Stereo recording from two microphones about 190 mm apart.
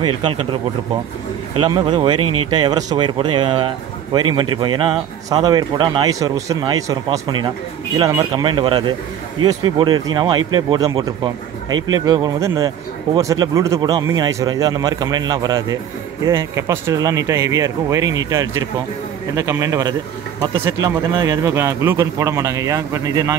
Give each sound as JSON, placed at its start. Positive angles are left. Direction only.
{"t": 0.0, "sound": "a man's voice", "side_deg": -25}
{"t": 1.6, "sound": "a man's voice", "side_deg": -25}